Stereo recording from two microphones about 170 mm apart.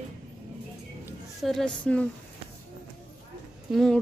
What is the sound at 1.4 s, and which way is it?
Music, centre (ahead or behind).